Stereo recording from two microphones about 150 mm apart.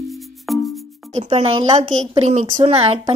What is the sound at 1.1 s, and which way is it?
A woman's voice, 45° right (ahead or behind).